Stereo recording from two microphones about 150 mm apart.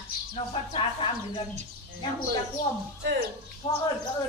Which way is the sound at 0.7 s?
35° left (ahead or behind).